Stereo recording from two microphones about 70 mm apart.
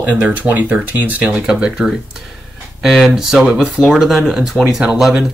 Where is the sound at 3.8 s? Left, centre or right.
Centre.